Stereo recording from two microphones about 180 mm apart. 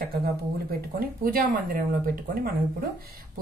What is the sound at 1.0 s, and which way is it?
Speech, 50° right (ahead or behind).